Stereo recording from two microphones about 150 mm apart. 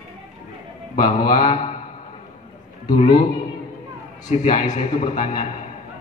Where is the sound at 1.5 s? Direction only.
50° left (ahead or behind).